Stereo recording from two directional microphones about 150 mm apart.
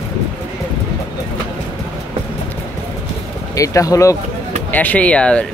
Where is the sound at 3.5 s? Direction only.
20° left (ahead or behind).